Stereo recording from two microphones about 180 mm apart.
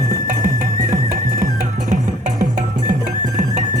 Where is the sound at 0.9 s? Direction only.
50° right (ahead or behind).